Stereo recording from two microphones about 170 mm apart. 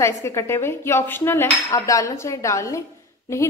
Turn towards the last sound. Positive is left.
turn(degrees=15)  # may be behind; listen again after turning